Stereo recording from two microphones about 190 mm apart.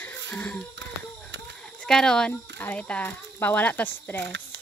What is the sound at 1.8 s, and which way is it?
Speech, 5° left (ahead or behind).